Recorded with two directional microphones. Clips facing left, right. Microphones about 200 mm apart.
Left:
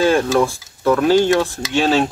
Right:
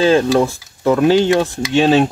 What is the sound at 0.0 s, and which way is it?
Speech, 20° right (ahead or behind).